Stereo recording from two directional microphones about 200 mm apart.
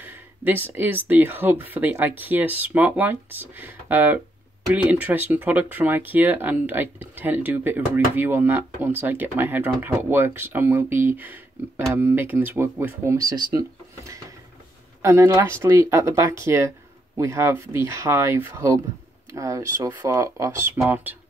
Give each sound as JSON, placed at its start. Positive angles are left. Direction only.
{"t": 0.0, "sound": "speech", "side_deg": -10}